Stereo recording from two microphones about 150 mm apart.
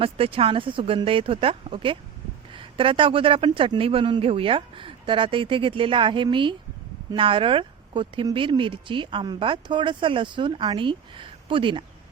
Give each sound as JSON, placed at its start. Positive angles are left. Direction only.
{"t": 0.0, "sound": "speech", "side_deg": -40}